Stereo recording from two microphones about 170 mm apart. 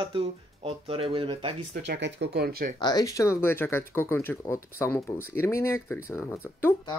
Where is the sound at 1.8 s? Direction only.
90° right; by 2.7 s 65° right (ahead or behind).